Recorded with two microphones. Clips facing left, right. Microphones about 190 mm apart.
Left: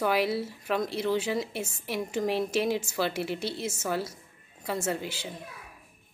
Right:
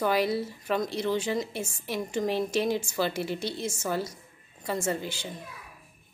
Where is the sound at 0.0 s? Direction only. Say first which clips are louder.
Right 1 dB; 5° left (ahead or behind).